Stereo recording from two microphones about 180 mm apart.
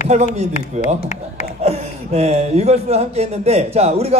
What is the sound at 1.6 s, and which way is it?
Speech, 35° right (ahead or behind).